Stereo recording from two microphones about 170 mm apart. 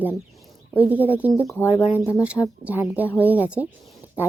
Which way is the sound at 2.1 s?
10° right (ahead or behind).